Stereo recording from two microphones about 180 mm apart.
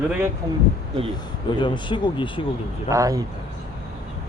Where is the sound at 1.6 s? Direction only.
25° left (ahead or behind).